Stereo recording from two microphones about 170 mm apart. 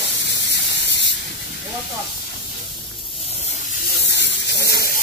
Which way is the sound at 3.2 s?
40° left (ahead or behind).